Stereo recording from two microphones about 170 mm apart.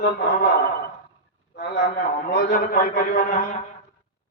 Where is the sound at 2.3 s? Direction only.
65° left (ahead or behind).